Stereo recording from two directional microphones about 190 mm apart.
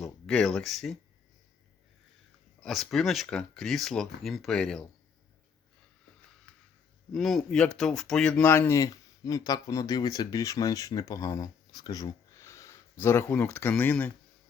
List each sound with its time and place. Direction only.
0.0 s speech: centre (ahead or behind)
2.6 s speech: centre (ahead or behind)
7.1 s speech: centre (ahead or behind)